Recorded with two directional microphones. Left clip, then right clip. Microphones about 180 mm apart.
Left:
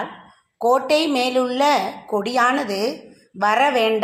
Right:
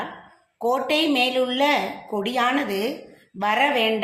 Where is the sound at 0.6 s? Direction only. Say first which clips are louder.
Left 4 dB; 25° left (ahead or behind).